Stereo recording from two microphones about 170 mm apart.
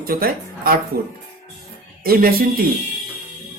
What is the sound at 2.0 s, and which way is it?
Speech, 60° right (ahead or behind).